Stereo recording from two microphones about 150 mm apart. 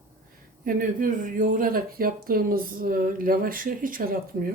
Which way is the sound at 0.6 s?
65° right (ahead or behind).